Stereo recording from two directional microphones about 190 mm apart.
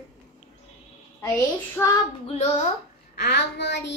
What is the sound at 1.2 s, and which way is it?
Speech, 15° left (ahead or behind).